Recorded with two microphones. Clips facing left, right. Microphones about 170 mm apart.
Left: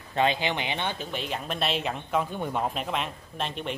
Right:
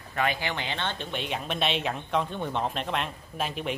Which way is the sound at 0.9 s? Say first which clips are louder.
Even; centre (ahead or behind).